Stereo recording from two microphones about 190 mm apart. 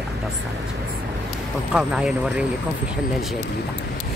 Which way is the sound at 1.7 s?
5° right (ahead or behind).